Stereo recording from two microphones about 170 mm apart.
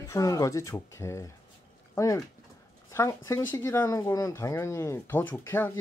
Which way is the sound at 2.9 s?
15° left (ahead or behind).